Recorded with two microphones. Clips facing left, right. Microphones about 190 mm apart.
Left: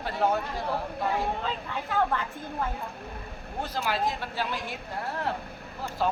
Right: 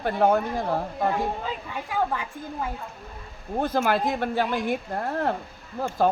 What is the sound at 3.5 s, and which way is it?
A woman's voice, 55° right (ahead or behind).